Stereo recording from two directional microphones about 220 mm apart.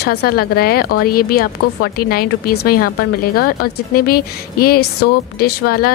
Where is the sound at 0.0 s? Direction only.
45° left (ahead or behind).